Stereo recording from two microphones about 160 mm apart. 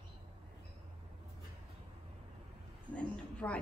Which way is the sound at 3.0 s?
5° left (ahead or behind).